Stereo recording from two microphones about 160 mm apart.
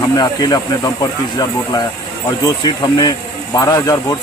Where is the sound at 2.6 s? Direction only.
25° left (ahead or behind).